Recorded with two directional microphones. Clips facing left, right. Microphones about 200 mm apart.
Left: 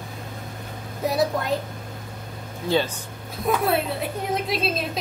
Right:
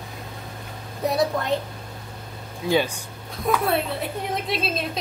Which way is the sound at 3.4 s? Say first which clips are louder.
Even; centre (ahead or behind).